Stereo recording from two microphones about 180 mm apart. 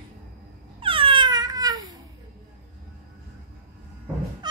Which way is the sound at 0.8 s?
30° right (ahead or behind).